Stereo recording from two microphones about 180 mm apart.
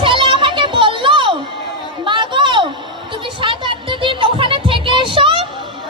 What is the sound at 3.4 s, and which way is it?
Music, 25° right (ahead or behind).